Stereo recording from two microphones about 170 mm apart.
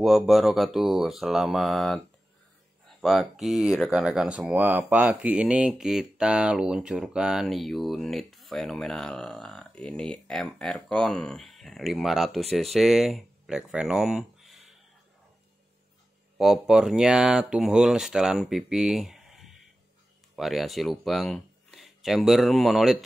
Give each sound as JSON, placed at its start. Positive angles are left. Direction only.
{"t": 0.0, "sound": "speech", "side_deg": 0}
{"t": 3.0, "sound": "speech", "side_deg": 0}
{"t": 16.3, "sound": "speech", "side_deg": 0}